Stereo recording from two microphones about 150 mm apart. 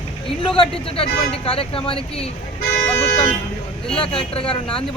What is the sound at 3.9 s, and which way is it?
Speech, 40° left (ahead or behind).